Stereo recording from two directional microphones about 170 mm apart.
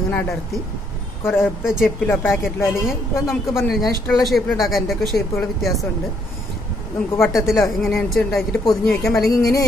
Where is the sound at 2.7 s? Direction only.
Centre (ahead or behind).